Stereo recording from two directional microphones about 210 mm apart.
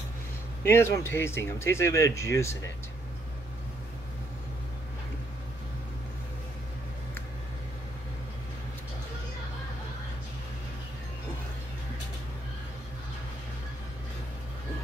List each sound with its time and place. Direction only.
0.7 s speech: 10° left (ahead or behind)